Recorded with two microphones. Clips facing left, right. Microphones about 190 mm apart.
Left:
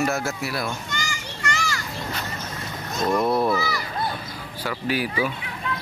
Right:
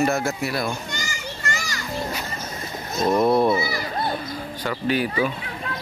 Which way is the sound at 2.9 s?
20° right (ahead or behind).